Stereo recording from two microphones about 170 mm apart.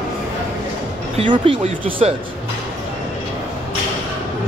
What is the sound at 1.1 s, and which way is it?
Speech, 30° right (ahead or behind).